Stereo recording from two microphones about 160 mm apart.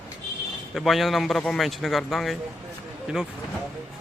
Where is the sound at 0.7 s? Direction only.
Centre (ahead or behind).